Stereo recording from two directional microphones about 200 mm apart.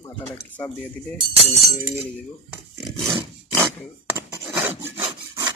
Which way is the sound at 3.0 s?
20° right (ahead or behind).